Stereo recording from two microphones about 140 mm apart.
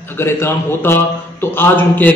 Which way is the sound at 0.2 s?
15° left (ahead or behind).